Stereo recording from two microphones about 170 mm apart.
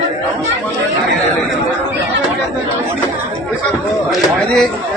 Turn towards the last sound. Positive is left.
turn(degrees=5)  # may be behind; listen again after turning